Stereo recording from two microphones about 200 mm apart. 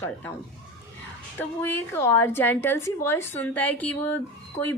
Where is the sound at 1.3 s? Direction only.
10° left (ahead or behind).